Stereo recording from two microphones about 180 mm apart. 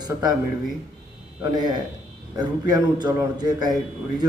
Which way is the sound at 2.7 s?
20° right (ahead or behind).